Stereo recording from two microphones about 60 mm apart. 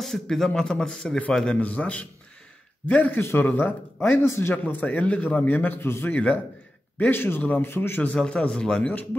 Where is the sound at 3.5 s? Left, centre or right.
Left.